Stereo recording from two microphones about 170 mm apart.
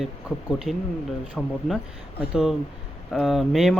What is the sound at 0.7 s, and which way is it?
Speech, 5° left (ahead or behind).